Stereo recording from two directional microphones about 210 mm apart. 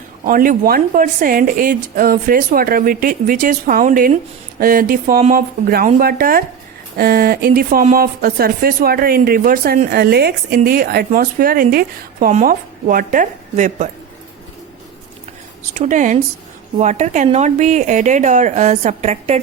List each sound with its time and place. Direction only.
0.3 s speech: 40° right (ahead or behind)
15.7 s speech: 35° right (ahead or behind)